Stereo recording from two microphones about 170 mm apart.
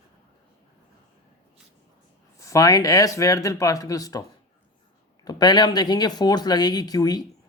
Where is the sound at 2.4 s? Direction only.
20° left (ahead or behind).